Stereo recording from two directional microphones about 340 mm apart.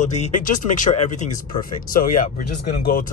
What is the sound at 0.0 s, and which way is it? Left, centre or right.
Speech, left.